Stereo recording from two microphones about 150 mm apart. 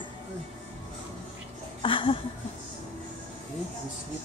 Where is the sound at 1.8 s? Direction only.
35° left (ahead or behind).